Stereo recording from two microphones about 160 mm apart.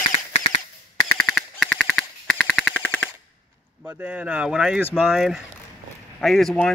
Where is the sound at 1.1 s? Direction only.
5° left (ahead or behind).